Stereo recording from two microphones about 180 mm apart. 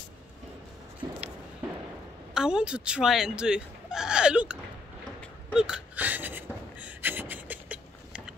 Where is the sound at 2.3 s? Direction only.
5° right (ahead or behind).